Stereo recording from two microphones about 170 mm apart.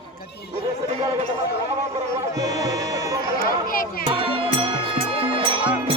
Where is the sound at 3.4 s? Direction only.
55° left (ahead or behind).